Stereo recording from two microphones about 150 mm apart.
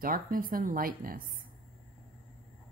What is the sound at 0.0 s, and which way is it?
Speech, 70° right (ahead or behind).